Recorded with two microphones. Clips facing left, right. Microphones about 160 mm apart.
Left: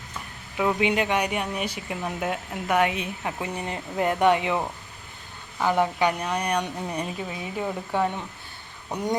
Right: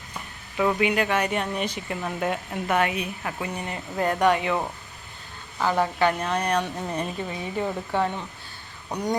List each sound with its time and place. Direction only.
0.5 s speech: 10° left (ahead or behind)
0.8 s a woman's voice: 20° left (ahead or behind)
2.9 s a woman's voice: 25° left (ahead or behind)